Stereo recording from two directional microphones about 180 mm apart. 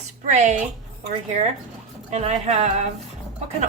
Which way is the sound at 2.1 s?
35° right (ahead or behind).